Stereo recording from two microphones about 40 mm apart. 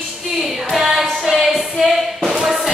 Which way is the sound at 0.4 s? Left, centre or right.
Centre.